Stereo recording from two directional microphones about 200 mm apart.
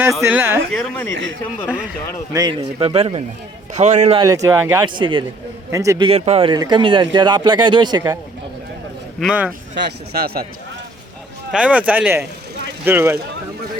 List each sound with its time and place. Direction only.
0.0 s speech: 10° right (ahead or behind)
0.7 s speech: 5° left (ahead or behind)
2.3 s a man's voice: 20° right (ahead or behind)
4.2 s speech: 15° right (ahead or behind)
6.1 s speech: 30° right (ahead or behind)
9.2 s speech: 5° right (ahead or behind)
9.7 s speech: 55° right (ahead or behind)
11.5 s speech: 5° right (ahead or behind)